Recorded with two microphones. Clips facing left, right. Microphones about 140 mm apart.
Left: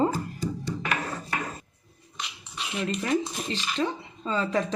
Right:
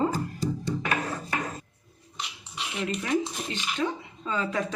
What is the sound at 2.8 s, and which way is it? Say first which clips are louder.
Speech: left 1 dB; 35° left (ahead or behind).